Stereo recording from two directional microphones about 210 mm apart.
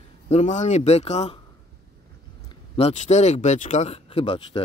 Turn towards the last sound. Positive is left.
turn(degrees=25)  # may be behind; listen again after turning